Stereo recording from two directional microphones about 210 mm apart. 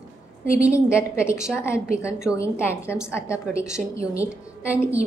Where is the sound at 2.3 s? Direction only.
10° left (ahead or behind).